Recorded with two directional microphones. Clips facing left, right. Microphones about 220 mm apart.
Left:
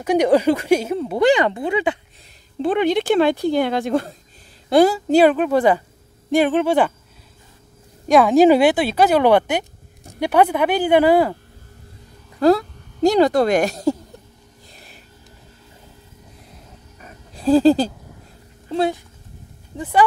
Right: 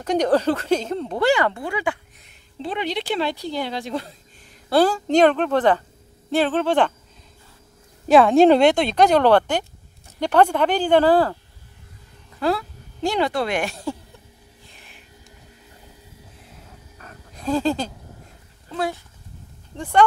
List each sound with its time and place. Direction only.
0.0 s speech: 10° left (ahead or behind)
2.6 s speech: 50° left (ahead or behind)
4.6 s speech: 10° left (ahead or behind)
8.1 s speech: centre (ahead or behind)
12.4 s a woman's voice: 40° left (ahead or behind)
14.7 s music: 40° left (ahead or behind)
17.3 s speech: 30° left (ahead or behind)
19.8 s speech: 5° left (ahead or behind)